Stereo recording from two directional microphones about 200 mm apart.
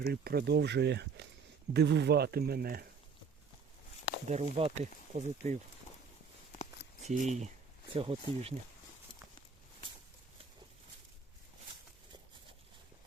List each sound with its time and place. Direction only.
0.0 s speech: 50° right (ahead or behind)
4.3 s speech: 30° right (ahead or behind)
7.1 s speech: 35° right (ahead or behind)